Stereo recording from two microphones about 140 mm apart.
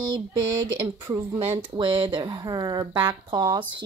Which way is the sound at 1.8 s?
35° right (ahead or behind).